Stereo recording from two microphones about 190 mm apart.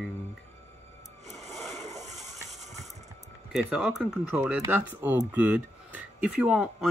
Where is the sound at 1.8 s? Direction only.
35° right (ahead or behind).